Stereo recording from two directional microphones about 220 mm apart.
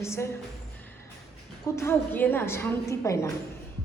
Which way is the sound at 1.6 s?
15° left (ahead or behind).